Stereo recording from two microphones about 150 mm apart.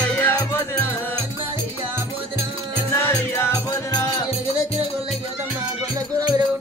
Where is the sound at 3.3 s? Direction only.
20° left (ahead or behind).